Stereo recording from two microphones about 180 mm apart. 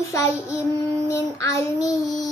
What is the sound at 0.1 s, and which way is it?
Child singing, 15° left (ahead or behind).